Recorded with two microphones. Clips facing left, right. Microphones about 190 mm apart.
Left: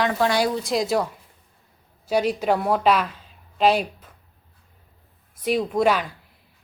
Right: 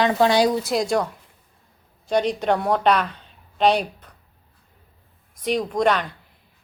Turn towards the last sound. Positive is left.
turn(degrees=5)  # may be behind; listen again after turning